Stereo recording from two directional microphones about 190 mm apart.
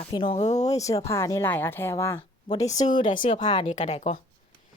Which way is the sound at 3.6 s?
35° left (ahead or behind).